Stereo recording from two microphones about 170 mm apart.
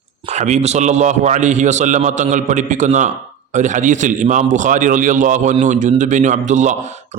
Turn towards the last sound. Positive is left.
turn(degrees=-45)  # may be behind; listen again after turning